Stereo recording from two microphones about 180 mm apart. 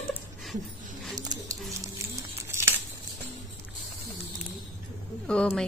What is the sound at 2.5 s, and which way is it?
Crumpling, 15° right (ahead or behind).